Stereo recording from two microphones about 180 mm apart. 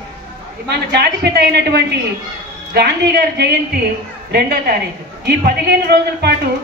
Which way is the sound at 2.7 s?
70° right (ahead or behind).